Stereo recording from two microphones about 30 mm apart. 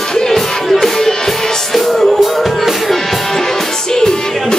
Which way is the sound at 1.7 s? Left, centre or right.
Centre.